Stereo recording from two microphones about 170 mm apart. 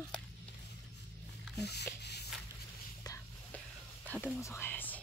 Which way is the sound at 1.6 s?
75° left (ahead or behind).